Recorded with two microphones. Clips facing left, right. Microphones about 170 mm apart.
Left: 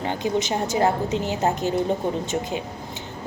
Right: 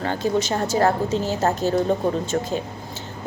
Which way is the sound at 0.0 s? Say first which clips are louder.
Right 2 dB; 15° left (ahead or behind).